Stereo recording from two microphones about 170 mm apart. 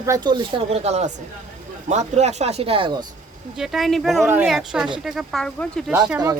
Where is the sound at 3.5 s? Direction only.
Centre (ahead or behind).